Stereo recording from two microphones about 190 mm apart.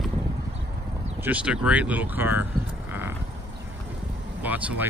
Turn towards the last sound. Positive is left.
turn(degrees=-10)  # may be behind; listen again after turning